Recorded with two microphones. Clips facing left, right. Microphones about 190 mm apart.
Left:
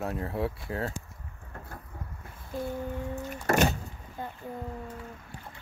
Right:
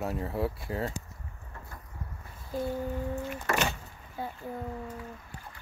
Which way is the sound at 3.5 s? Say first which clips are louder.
Left 6 dB; 40° left (ahead or behind).